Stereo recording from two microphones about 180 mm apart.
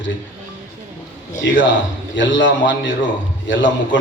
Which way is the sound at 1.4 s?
75° left (ahead or behind).